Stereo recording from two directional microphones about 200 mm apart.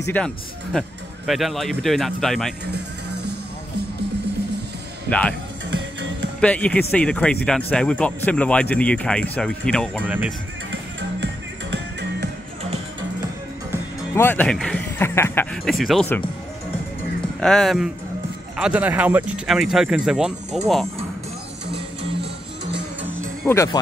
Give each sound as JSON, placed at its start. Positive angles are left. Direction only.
{"t": 0.0, "sound": "speech", "side_deg": 10}
{"t": 6.4, "sound": "speech", "side_deg": 5}
{"t": 10.0, "sound": "speech", "side_deg": -5}
{"t": 11.7, "sound": "music", "side_deg": -55}
{"t": 14.1, "sound": "speech", "side_deg": 10}
{"t": 17.4, "sound": "speech", "side_deg": 5}
{"t": 23.4, "sound": "speech", "side_deg": 15}